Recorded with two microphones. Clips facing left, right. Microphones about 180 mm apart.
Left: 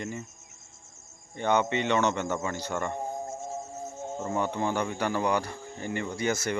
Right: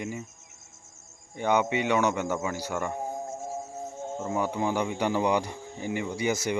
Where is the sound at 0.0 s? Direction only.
10° right (ahead or behind).